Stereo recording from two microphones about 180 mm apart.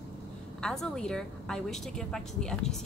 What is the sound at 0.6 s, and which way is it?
A woman's voice, 5° left (ahead or behind).